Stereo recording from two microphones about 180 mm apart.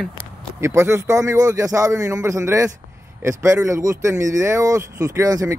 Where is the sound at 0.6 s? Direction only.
15° right (ahead or behind).